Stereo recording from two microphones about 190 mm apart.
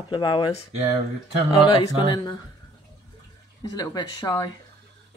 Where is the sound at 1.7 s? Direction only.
20° left (ahead or behind).